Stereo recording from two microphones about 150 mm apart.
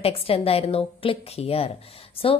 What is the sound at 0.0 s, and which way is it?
A woman's voice, 40° left (ahead or behind).